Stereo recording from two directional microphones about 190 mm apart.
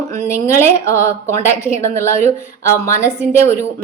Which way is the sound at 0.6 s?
15° left (ahead or behind).